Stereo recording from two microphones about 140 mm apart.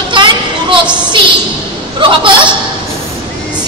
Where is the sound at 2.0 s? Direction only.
35° right (ahead or behind).